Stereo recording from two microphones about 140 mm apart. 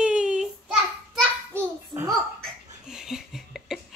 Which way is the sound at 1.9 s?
30° right (ahead or behind).